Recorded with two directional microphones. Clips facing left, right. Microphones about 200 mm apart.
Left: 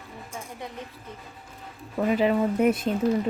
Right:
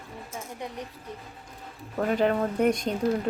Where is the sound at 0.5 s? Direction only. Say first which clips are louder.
Right 3 dB; 20° right (ahead or behind).